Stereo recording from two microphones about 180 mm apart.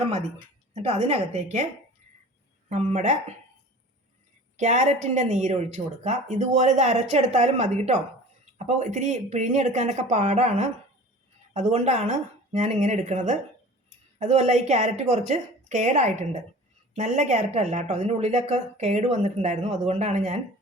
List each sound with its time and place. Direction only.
0.1 s speech: 35° right (ahead or behind)
2.6 s speech: 40° right (ahead or behind)
4.5 s speech: 40° right (ahead or behind)